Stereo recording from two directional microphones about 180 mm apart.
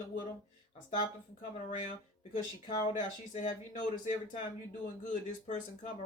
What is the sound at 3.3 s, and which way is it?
Speech, 45° left (ahead or behind).